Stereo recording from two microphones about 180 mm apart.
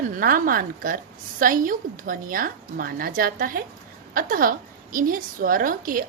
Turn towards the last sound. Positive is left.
turn(degrees=-50)  # may be behind; listen again after turning